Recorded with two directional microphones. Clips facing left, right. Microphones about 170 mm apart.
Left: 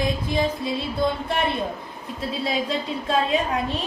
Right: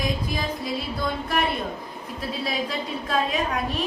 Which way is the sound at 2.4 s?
25° left (ahead or behind).